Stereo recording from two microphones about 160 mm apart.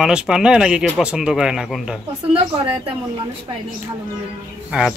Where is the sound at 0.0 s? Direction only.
5° right (ahead or behind).